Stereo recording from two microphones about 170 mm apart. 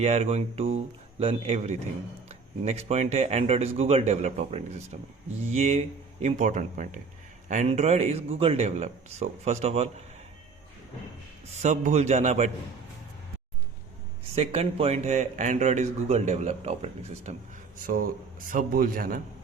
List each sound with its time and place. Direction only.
0.0 s a man's voice: 40° right (ahead or behind)
11.6 s a man's voice: 45° right (ahead or behind)
14.3 s speech: 35° right (ahead or behind)
17.8 s a man's voice: 55° right (ahead or behind)